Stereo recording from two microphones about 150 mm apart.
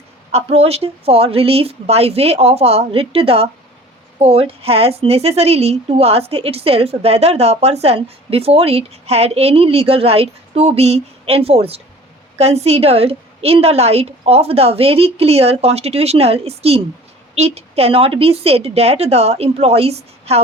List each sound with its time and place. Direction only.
0.3 s a woman's voice: 45° right (ahead or behind)